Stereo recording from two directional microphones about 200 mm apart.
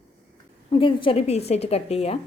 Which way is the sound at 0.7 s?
25° left (ahead or behind).